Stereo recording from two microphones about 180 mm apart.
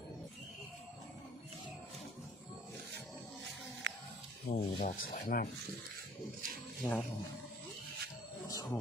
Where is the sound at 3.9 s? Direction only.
85° right.